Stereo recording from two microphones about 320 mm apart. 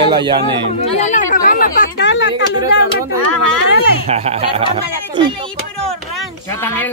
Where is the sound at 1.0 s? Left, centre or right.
Left.